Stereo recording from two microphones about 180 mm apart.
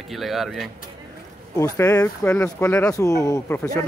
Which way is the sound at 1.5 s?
15° left (ahead or behind).